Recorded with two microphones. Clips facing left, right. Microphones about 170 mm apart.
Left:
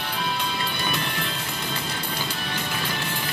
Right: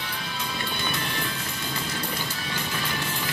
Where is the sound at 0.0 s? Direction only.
65° left (ahead or behind).